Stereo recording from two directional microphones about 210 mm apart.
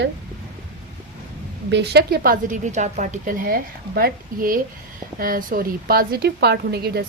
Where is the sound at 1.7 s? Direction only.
55° right (ahead or behind).